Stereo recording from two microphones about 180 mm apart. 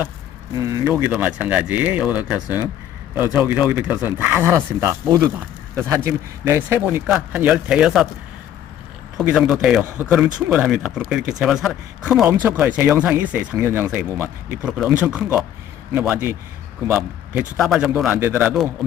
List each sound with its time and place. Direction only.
0.5 s speech: 20° right (ahead or behind); by 8.0 s 5° right (ahead or behind)
9.1 s speech: centre (ahead or behind)
17.6 s speech: centre (ahead or behind)
17.9 s speech: 10° right (ahead or behind)
18.8 s speech: centre (ahead or behind)